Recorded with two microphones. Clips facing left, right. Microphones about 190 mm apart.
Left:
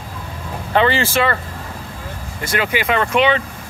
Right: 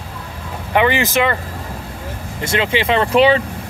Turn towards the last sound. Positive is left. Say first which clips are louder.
# right 3 dB
turn(degrees=-35)  # may be behind; listen again after turning